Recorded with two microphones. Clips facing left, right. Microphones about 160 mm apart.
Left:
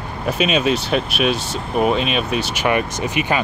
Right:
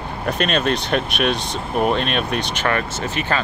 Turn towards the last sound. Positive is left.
turn(degrees=15)  # may be behind; listen again after turning